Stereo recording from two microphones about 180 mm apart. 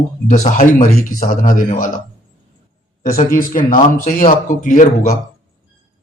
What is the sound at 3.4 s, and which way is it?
A man's voice, 50° left (ahead or behind).